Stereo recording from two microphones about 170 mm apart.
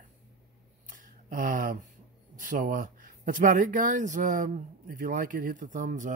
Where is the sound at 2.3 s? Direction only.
50° right (ahead or behind).